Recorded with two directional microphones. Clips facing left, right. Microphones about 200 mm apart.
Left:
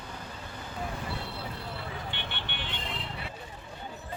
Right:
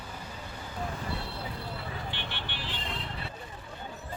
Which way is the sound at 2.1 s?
5° right (ahead or behind).